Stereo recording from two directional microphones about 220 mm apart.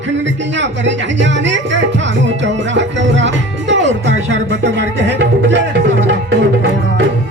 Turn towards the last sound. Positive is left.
turn(degrees=-50)  # may be behind; listen again after turning